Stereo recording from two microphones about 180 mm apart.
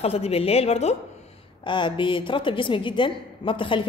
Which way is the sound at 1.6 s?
25° left (ahead or behind).